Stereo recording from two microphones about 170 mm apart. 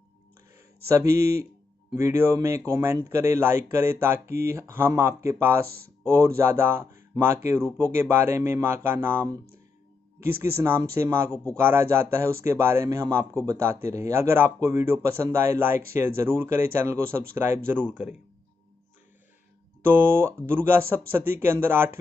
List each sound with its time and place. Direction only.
0.8 s speech: 20° right (ahead or behind)
10.4 s speech: 15° right (ahead or behind)
19.8 s speech: 10° right (ahead or behind)